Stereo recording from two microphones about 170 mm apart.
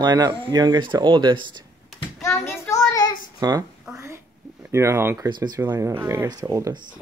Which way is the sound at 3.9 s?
15° right (ahead or behind).